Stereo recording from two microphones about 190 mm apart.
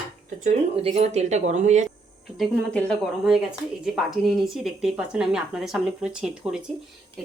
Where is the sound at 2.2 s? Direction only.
5° left (ahead or behind).